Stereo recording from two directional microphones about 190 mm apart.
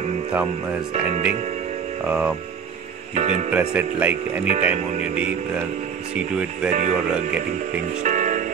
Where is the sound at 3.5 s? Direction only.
5° right (ahead or behind).